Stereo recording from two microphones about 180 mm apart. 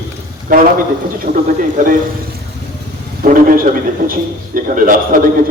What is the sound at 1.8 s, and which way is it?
Speech, 45° right (ahead or behind).